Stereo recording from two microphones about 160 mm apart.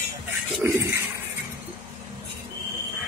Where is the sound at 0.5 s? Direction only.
15° right (ahead or behind).